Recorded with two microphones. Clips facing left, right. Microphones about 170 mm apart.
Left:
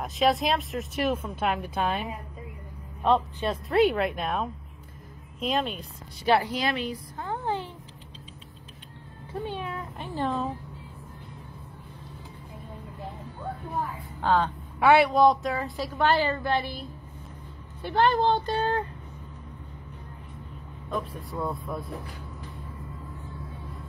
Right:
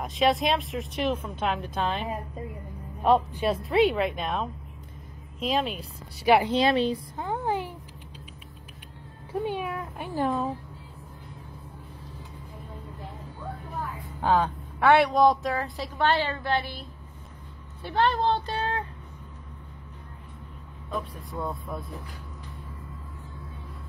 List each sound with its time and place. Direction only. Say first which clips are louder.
0.0 s speech: even; centre (ahead or behind)
3.0 s a man's voice: right 2 dB; 10° right (ahead or behind)
6.3 s a woman's voice: right 4 dB; 25° right (ahead or behind)
7.2 s a sound: right 2 dB; 15° right (ahead or behind)
9.3 s speech: right 4 dB; 10° right (ahead or behind)
14.2 s a man's voice: right 1 dB; 10° right (ahead or behind)
14.8 s speech: left 1 dB; 5° left (ahead or behind)
17.8 s speech: left 2 dB; centre (ahead or behind)
20.9 s speech: left 1 dB; centre (ahead or behind)